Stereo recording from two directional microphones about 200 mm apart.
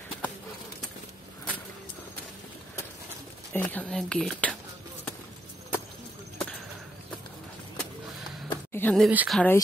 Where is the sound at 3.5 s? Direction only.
10° left (ahead or behind).